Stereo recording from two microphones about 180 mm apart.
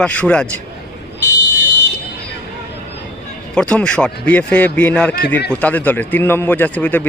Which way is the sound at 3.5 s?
5° left (ahead or behind).